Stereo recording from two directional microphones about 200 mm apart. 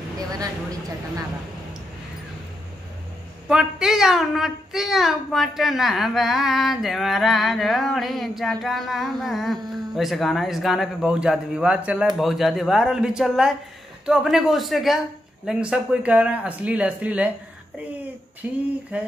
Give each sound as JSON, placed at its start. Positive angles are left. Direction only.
{"t": 0.3, "sound": "speech", "side_deg": -15}
{"t": 3.4, "sound": "a child's voice", "side_deg": -5}
{"t": 18.4, "sound": "speech", "side_deg": -10}